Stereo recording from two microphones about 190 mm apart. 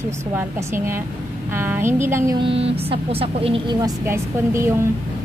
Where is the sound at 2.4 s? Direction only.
30° right (ahead or behind).